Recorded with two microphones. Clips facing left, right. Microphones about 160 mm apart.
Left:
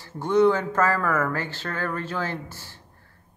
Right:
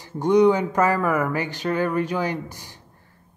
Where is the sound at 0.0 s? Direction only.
15° right (ahead or behind).